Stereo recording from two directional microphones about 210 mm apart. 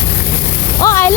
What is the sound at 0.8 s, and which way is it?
Speech, 15° left (ahead or behind).